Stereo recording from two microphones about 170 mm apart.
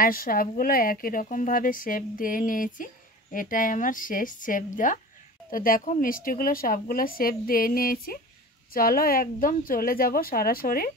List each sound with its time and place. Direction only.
0.0 s a woman's voice: 55° left (ahead or behind)